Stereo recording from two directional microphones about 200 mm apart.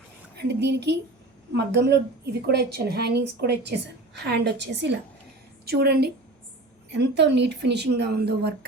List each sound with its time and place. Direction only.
0.3 s a woman's voice: 55° right (ahead or behind)